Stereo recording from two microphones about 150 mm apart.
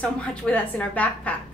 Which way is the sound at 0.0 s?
10° left (ahead or behind).